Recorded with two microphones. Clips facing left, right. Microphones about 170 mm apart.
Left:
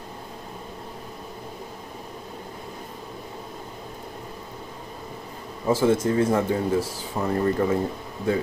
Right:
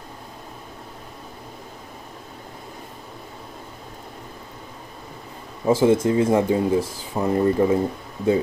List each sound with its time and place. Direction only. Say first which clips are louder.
5.7 s speech: right 3 dB; 15° right (ahead or behind)